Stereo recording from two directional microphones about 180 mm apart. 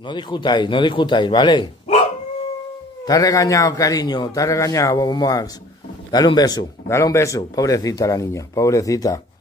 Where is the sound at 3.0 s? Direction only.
20° left (ahead or behind).